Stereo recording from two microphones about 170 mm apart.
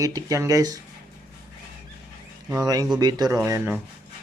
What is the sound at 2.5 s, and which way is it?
Speech, 20° right (ahead or behind).